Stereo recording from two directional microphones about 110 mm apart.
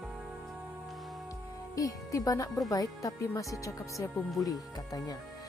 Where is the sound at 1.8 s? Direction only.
30° left (ahead or behind).